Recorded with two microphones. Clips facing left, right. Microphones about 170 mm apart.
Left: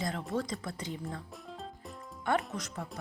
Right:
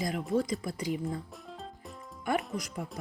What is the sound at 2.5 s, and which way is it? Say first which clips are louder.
Speech: right 3 dB; 10° right (ahead or behind).